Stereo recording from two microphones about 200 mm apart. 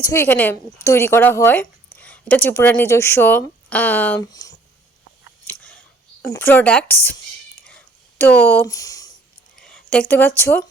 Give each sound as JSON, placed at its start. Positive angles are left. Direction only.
{"t": 0.0, "sound": "speech", "side_deg": 10}
{"t": 4.3, "sound": "speech", "side_deg": 20}
{"t": 6.3, "sound": "speech", "side_deg": 10}
{"t": 8.2, "sound": "speech", "side_deg": 10}
{"t": 9.6, "sound": "a sound", "side_deg": 5}
{"t": 10.4, "sound": "speech", "side_deg": 15}